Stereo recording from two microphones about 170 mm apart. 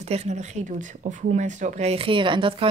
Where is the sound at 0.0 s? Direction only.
40° right (ahead or behind).